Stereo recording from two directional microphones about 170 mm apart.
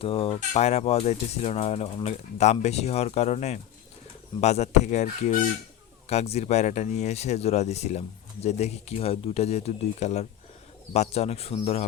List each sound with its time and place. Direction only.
0.0 s speech: 35° left (ahead or behind)